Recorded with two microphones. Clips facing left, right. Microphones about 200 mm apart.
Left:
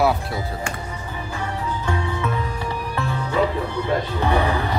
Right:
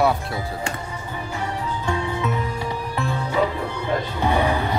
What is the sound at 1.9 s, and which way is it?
Music, 20° right (ahead or behind).